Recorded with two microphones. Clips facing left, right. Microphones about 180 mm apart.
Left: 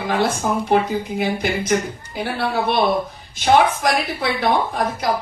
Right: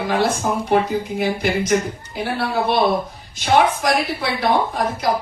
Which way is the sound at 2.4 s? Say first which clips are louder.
Even; 55° left (ahead or behind).